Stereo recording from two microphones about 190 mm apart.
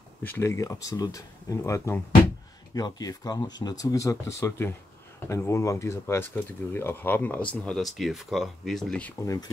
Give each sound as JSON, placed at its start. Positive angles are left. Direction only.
{"t": 0.2, "sound": "speech", "side_deg": 10}
{"t": 9.2, "sound": "speech", "side_deg": 15}